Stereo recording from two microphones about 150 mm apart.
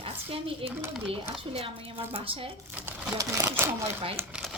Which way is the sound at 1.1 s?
40° right (ahead or behind).